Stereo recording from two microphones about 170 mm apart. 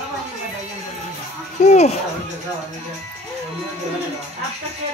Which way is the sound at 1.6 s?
40° left (ahead or behind).